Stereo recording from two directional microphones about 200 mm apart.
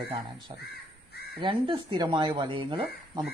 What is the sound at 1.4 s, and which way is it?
Speech, 25° right (ahead or behind).